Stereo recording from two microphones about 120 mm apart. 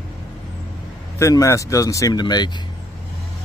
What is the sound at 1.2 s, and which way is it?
Speech, 25° left (ahead or behind).